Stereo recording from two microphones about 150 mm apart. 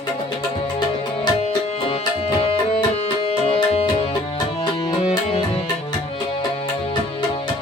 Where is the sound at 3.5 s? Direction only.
35° left (ahead or behind).